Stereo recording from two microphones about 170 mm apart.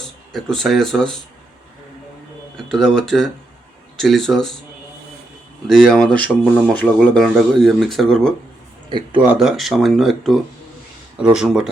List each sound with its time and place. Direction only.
0.5 s speech: centre (ahead or behind)
2.6 s speech: centre (ahead or behind)
5.6 s speech: centre (ahead or behind)
8.9 s speech: 30° right (ahead or behind)
9.2 s speech: 5° right (ahead or behind)